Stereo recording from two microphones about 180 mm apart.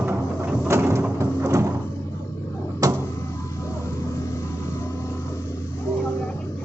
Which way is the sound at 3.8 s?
15° left (ahead or behind).